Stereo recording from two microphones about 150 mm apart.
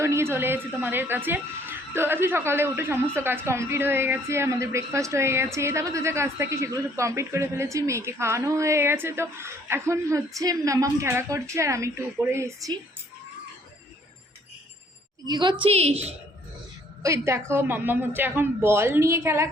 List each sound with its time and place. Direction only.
0.0 s a woman's voice: 15° right (ahead or behind)
15.3 s a woman's voice: 30° right (ahead or behind)
15.6 s a woman's voice: 40° right (ahead or behind)
17.0 s a woman's voice: 20° right (ahead or behind)